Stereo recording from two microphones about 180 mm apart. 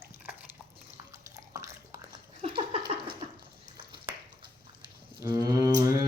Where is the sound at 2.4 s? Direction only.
30° right (ahead or behind).